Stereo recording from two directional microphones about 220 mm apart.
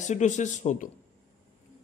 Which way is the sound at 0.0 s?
35° left (ahead or behind).